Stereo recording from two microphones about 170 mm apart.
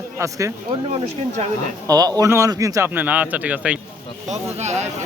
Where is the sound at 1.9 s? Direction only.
20° right (ahead or behind).